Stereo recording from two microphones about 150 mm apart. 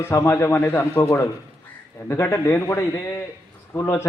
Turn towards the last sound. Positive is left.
turn(degrees=20)  # may be behind; listen again after turning